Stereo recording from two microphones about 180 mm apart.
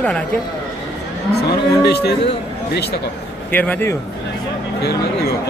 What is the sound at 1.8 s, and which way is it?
Speech, 65° left (ahead or behind).